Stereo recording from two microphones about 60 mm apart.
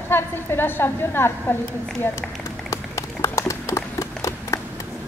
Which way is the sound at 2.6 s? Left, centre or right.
Left.